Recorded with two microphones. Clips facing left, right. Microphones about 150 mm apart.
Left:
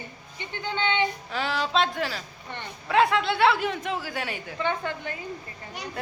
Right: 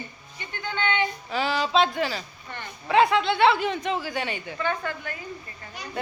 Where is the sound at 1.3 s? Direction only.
Centre (ahead or behind).